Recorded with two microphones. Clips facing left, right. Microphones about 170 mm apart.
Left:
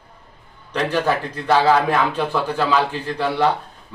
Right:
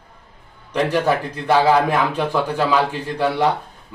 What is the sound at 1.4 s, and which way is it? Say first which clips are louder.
A man's voice: right 1 dB; 15° right (ahead or behind).